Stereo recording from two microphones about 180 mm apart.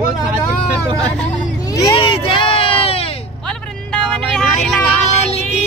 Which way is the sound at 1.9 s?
30° left (ahead or behind).